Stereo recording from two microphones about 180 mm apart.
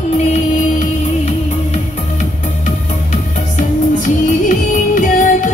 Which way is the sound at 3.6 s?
45° left (ahead or behind).